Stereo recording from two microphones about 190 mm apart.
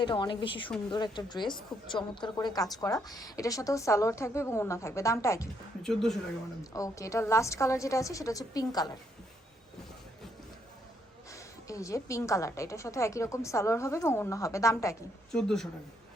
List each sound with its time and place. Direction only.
0.0 s a woman's voice: 25° left (ahead or behind)
5.8 s speech: centre (ahead or behind)
6.7 s a woman's voice: 15° left (ahead or behind)
11.3 s a woman's voice: 15° left (ahead or behind)
15.3 s speech: 5° left (ahead or behind)